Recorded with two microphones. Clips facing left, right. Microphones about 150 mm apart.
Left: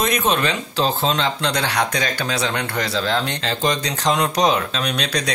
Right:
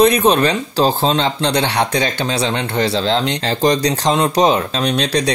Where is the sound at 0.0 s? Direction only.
35° right (ahead or behind).